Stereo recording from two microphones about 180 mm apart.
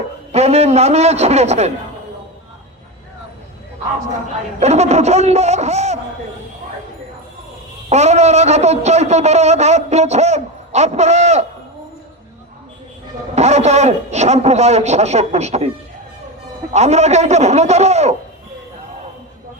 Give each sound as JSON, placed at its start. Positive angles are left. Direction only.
{"t": 0.3, "sound": "a man's voice", "side_deg": -35}
{"t": 4.6, "sound": "a man's voice", "side_deg": -40}
{"t": 7.9, "sound": "a man's voice", "side_deg": -40}
{"t": 13.3, "sound": "a man's voice", "side_deg": -40}
{"t": 16.7, "sound": "a man's voice", "side_deg": -40}